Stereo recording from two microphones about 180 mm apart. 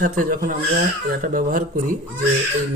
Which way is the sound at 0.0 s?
50° right (ahead or behind).